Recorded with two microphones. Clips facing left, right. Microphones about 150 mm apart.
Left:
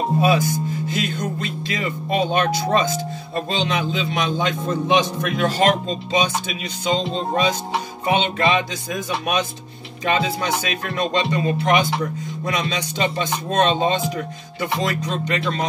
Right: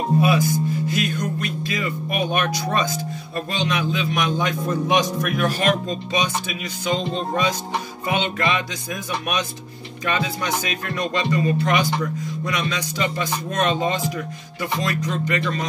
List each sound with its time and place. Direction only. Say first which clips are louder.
0.2 s music: left 2 dB; 25° left (ahead or behind)
10.0 s music: left 3 dB; 25° left (ahead or behind)